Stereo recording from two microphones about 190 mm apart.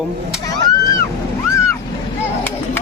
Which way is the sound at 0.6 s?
20° left (ahead or behind).